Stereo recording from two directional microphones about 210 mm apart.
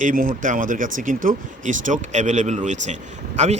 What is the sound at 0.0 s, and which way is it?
Speech, 40° right (ahead or behind).